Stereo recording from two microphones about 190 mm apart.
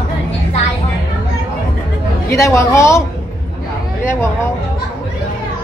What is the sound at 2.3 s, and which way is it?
Speech, 15° left (ahead or behind).